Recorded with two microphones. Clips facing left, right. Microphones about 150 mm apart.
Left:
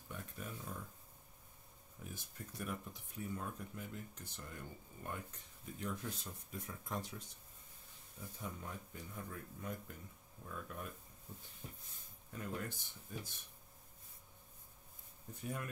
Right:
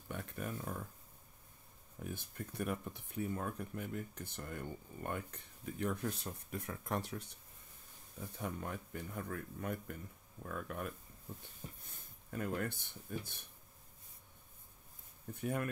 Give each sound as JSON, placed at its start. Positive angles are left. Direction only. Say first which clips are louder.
{"t": 0.1, "sound": "a sound", "louder": "right 6 dB", "side_deg": -60}
{"t": 2.0, "sound": "speech", "louder": "right 6 dB", "side_deg": -60}
{"t": 8.4, "sound": "speech", "louder": "right 6 dB", "side_deg": -65}
{"t": 12.3, "sound": "speech", "louder": "right 6 dB", "side_deg": -60}
{"t": 15.3, "sound": "speech", "louder": "right 7 dB", "side_deg": -60}